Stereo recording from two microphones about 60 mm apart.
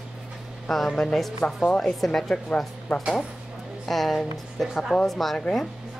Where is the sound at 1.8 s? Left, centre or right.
Centre.